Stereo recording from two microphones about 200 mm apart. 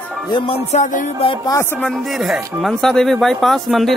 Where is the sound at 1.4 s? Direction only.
15° left (ahead or behind).